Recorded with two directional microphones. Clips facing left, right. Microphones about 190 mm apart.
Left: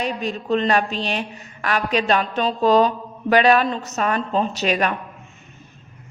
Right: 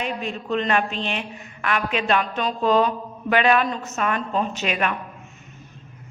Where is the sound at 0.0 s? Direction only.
35° left (ahead or behind).